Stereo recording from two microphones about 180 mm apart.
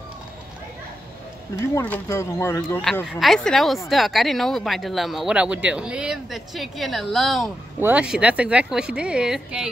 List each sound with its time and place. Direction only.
1.8 s speech: 15° left (ahead or behind)
2.8 s speech: centre (ahead or behind)